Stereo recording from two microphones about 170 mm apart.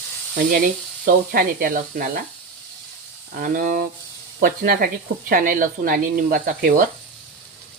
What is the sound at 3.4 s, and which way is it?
Speech, 55° right (ahead or behind).